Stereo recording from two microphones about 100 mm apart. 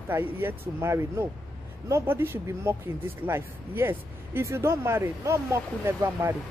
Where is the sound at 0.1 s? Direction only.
20° right (ahead or behind).